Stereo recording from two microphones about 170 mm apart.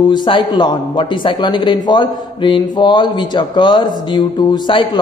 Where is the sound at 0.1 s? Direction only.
25° left (ahead or behind).